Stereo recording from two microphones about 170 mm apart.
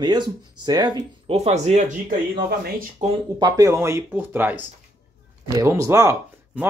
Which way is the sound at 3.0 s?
40° right (ahead or behind).